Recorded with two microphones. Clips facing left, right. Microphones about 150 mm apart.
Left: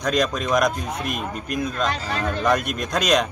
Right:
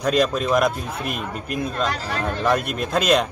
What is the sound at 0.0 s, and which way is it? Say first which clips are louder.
A man's voice: right 2 dB; 5° right (ahead or behind).